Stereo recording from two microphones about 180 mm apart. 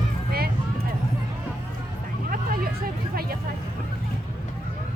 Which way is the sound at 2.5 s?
55° right (ahead or behind).